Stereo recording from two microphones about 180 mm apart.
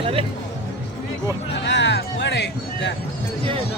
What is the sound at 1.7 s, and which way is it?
Music, 75° left (ahead or behind).